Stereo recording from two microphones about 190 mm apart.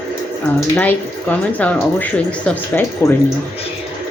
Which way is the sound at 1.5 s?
10° left (ahead or behind).